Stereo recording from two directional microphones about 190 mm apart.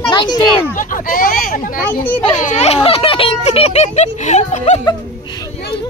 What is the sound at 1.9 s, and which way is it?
Speech, 10° left (ahead or behind).